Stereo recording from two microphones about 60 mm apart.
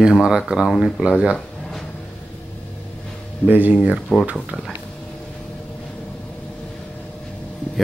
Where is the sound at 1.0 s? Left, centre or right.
Right.